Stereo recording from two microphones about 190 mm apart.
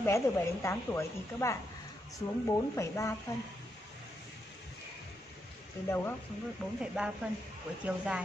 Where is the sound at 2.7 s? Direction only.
15° left (ahead or behind).